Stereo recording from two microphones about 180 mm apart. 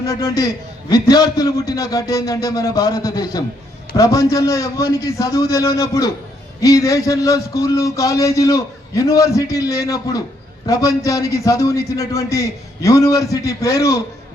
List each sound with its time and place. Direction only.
0.0 s a man's voice: 20° left (ahead or behind)